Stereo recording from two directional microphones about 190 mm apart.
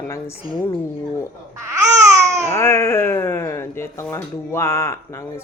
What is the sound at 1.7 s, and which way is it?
Babbling, 15° right (ahead or behind).